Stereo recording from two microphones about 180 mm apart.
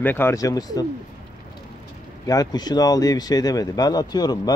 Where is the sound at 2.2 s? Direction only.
20° left (ahead or behind).